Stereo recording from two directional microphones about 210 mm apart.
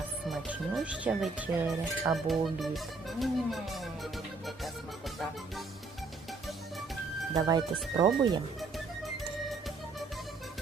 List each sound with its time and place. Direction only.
0.3 s speech: 5° right (ahead or behind)
7.3 s speech: 20° right (ahead or behind)